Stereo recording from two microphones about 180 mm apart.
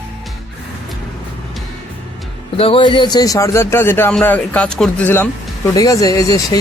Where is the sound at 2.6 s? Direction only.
30° left (ahead or behind).